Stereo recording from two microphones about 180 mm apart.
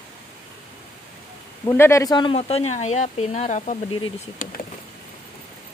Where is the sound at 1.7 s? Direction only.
15° left (ahead or behind); by 3.7 s 45° left (ahead or behind).